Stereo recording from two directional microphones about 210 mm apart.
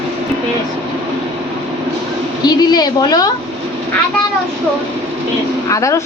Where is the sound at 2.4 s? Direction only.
20° left (ahead or behind).